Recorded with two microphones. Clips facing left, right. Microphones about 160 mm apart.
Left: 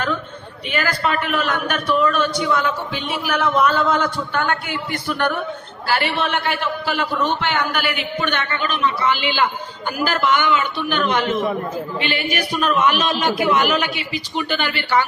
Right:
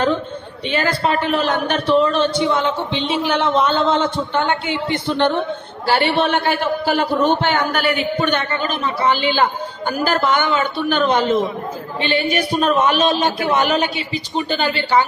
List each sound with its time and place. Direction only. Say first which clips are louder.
0.7 s a man's voice: right 3 dB; 30° right (ahead or behind)